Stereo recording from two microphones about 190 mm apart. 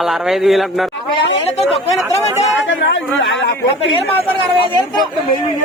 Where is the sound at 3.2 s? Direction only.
80° left.